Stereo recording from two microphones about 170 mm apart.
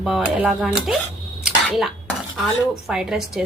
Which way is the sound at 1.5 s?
Centre (ahead or behind).